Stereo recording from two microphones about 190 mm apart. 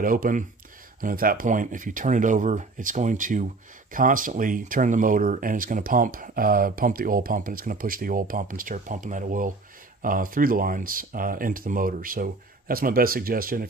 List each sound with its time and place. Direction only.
0.0 s speech: 45° right (ahead or behind)